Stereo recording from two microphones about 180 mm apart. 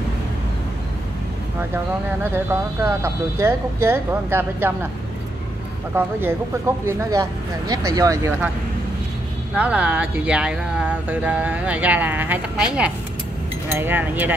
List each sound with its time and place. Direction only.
2.3 s speech: 15° right (ahead or behind)
5.9 s speech: 10° right (ahead or behind)
9.6 s speech: 10° right (ahead or behind)